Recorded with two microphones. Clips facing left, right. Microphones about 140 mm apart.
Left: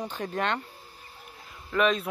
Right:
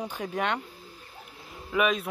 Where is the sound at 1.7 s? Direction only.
Centre (ahead or behind).